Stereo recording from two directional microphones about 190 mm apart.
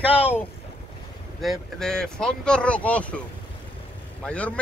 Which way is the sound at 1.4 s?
5° left (ahead or behind).